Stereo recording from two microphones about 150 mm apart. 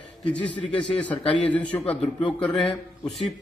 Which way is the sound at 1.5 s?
10° left (ahead or behind).